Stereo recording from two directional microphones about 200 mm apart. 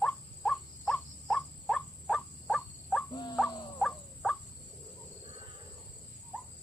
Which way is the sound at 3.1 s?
20° left (ahead or behind).